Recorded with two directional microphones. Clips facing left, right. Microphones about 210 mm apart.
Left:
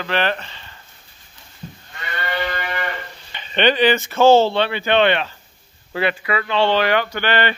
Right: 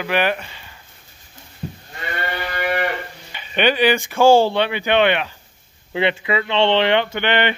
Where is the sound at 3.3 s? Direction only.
10° right (ahead or behind).